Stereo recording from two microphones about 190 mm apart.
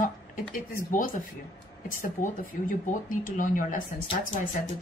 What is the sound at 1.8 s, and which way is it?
A woman's voice, 45° left (ahead or behind).